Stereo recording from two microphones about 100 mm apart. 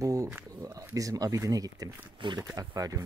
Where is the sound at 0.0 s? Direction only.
35° right (ahead or behind).